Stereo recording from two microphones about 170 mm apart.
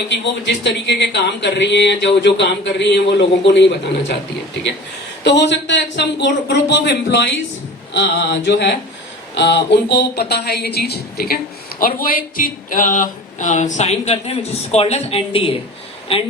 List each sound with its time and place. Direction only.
0.1 s speech: 90° left
5.2 s speech: 90° left; by 11.3 s 65° left (ahead or behind)
11.8 s speech: 55° left (ahead or behind); by 15.5 s 35° left (ahead or behind)